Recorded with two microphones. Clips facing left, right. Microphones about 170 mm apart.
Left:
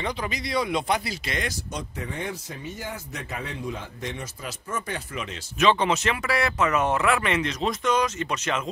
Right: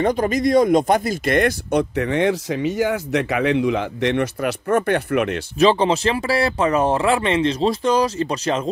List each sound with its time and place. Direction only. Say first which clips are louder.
0.0 s speech: right 12 dB; 45° right (ahead or behind); by 5.4 s 65° right (ahead or behind)
5.6 s speech: right 6 dB; 35° right (ahead or behind)